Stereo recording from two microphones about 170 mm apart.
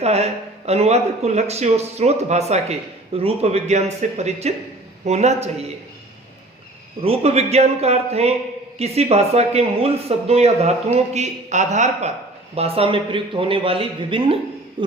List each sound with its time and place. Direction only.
0.0 s speech: 40° right (ahead or behind)
7.0 s speech: 35° right (ahead or behind)
14.8 s hoot: 30° right (ahead or behind)